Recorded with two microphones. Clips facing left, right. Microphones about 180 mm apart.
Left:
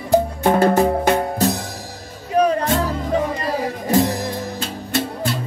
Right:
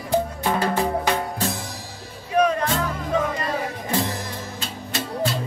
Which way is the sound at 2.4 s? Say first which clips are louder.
Left 3 dB; 30° left (ahead or behind).